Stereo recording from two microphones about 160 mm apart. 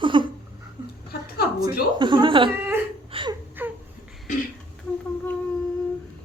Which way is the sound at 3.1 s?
30° right (ahead or behind).